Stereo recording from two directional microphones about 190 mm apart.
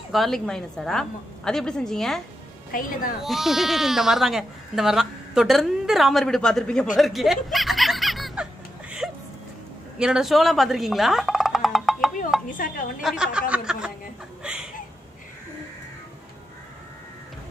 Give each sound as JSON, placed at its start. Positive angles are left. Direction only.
{"t": 0.1, "sound": "speech", "side_deg": 0}
{"t": 2.7, "sound": "a woman's voice", "side_deg": 45}
{"t": 3.2, "sound": "speech", "side_deg": 0}
{"t": 7.0, "sound": "snicker", "side_deg": 0}
{"t": 9.0, "sound": "a sound", "side_deg": 0}
{"t": 9.9, "sound": "speech", "side_deg": -5}
{"t": 12.3, "sound": "a sound", "side_deg": 0}
{"t": 13.0, "sound": "speech", "side_deg": -5}
{"t": 14.4, "sound": "a sound", "side_deg": -5}